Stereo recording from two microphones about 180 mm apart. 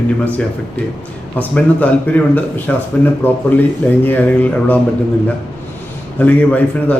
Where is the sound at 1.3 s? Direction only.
10° left (ahead or behind).